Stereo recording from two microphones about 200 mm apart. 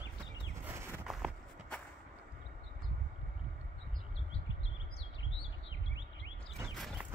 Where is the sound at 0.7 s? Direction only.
10° right (ahead or behind).